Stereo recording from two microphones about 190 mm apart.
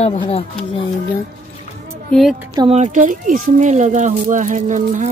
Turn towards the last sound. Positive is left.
turn(degrees=-40)  # may be behind; listen again after turning